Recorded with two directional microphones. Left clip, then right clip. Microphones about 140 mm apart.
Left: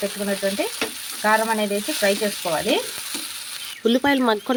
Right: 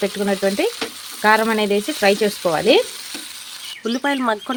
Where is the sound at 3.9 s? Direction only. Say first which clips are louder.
Left 1 dB; 25° left (ahead or behind).